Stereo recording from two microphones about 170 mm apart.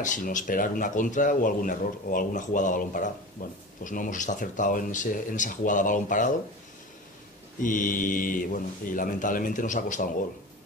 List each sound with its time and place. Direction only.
0.0 s speech: 50° left (ahead or behind)
7.6 s speech: 50° left (ahead or behind)